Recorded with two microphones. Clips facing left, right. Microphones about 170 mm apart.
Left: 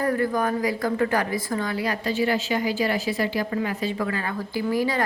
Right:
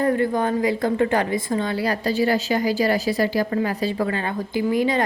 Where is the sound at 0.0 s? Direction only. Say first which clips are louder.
Right 3 dB; 25° right (ahead or behind).